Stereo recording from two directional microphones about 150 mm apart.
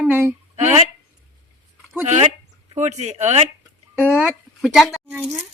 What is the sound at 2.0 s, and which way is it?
Speech, 50° right (ahead or behind).